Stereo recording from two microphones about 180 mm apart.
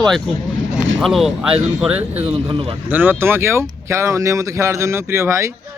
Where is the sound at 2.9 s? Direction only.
10° right (ahead or behind).